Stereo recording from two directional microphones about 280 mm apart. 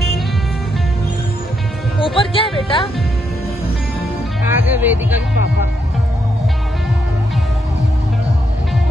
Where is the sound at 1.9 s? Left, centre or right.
Centre.